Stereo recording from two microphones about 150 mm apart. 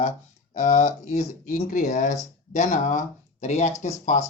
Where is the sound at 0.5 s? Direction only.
55° left (ahead or behind).